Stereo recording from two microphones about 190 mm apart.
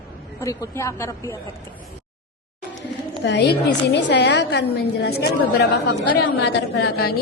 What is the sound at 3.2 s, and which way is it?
A woman's voice, 65° left (ahead or behind).